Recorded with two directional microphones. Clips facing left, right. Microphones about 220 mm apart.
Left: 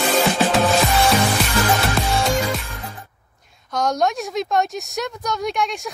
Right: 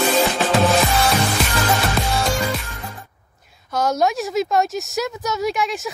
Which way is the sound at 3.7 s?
5° right (ahead or behind).